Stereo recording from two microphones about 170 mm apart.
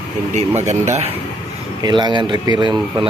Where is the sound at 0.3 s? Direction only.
40° right (ahead or behind).